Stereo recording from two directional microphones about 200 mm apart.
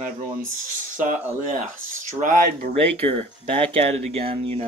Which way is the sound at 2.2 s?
40° right (ahead or behind).